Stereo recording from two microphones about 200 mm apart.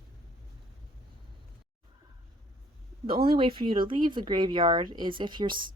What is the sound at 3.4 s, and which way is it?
A woman's voice, 25° right (ahead or behind).